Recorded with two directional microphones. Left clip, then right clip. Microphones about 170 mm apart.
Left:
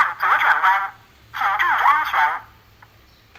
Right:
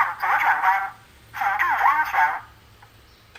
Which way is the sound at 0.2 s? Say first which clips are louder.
Left 4 dB; 20° left (ahead or behind).